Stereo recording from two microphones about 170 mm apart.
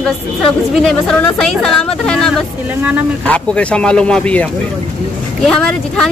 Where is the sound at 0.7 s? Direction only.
Centre (ahead or behind).